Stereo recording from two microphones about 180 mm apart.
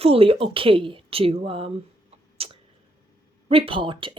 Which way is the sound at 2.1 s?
30° right (ahead or behind).